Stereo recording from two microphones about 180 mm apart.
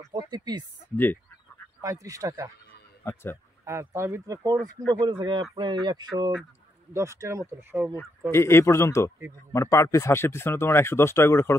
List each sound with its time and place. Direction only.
0.1 s speech: 20° right (ahead or behind)
0.9 s speech: 10° left (ahead or behind)
1.8 s speech: 20° right (ahead or behind)
3.0 s speech: 15° left (ahead or behind)
3.6 s speech: 15° right (ahead or behind)
8.3 s speech: 15° left (ahead or behind)